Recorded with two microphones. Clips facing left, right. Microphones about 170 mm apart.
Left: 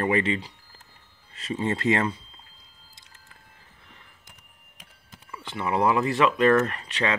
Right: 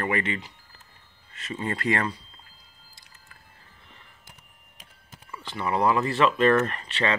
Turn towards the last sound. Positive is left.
turn(degrees=10)  # may be behind; listen again after turning